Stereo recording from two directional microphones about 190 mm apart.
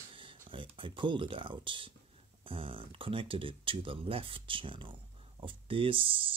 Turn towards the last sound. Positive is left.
turn(degrees=-30)  # may be behind; listen again after turning